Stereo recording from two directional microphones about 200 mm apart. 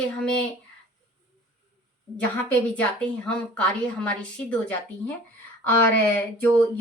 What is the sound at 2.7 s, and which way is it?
A woman's voice, 5° left (ahead or behind).